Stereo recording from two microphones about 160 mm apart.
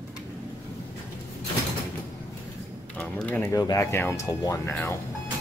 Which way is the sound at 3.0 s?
5° left (ahead or behind).